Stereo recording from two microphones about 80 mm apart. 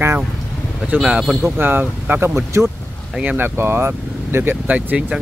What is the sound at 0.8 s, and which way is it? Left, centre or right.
Speech, centre.